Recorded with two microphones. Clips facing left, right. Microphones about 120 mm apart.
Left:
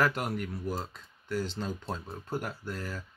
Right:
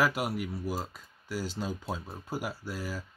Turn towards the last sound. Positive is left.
turn(degrees=-5)  # may be behind; listen again after turning